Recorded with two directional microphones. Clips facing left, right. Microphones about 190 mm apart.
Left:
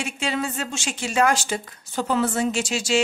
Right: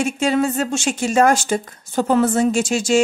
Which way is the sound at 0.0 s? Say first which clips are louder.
Right 9 dB; 45° right (ahead or behind).